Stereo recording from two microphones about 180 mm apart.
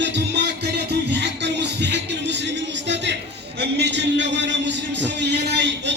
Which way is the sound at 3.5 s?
70° right (ahead or behind).